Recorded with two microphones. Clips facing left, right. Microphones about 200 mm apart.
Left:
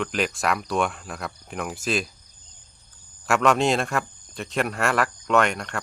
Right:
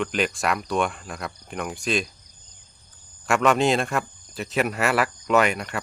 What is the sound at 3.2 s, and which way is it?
Speech, centre (ahead or behind).